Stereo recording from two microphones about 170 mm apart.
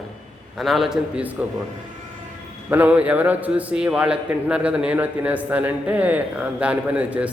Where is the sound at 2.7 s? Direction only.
10° right (ahead or behind).